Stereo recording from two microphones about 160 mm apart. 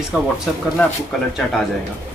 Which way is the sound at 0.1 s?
5° right (ahead or behind).